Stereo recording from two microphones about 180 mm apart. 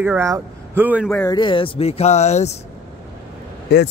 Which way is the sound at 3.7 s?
65° left (ahead or behind).